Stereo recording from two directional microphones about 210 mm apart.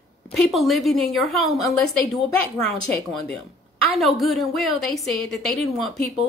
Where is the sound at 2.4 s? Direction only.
15° left (ahead or behind).